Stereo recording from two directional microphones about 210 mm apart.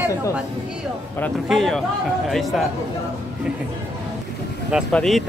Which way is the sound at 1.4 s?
Centre (ahead or behind).